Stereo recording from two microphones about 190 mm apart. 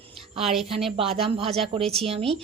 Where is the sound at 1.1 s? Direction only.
30° right (ahead or behind).